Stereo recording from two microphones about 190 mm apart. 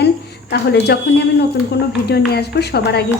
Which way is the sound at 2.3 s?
60° left (ahead or behind).